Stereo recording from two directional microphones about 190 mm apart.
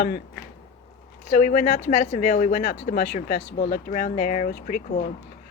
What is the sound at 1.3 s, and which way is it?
Speech, 40° left (ahead or behind).